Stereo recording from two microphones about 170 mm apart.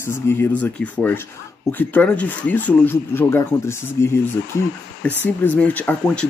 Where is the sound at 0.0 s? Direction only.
15° left (ahead or behind).